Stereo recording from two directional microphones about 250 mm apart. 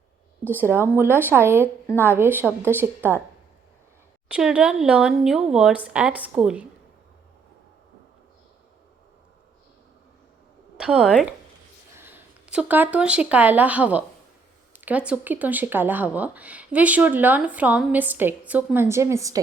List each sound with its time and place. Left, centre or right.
0.4 s speech: centre
4.3 s a woman's voice: centre
10.8 s a woman's voice: centre